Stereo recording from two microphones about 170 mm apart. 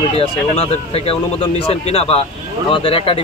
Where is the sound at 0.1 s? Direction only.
35° left (ahead or behind).